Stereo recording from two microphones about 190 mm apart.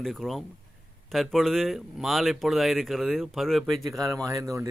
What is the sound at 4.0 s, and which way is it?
Speech, 15° right (ahead or behind).